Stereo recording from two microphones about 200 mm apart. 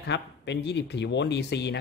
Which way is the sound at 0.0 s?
60° left (ahead or behind).